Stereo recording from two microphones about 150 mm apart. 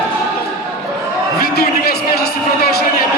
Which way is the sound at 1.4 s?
90° left.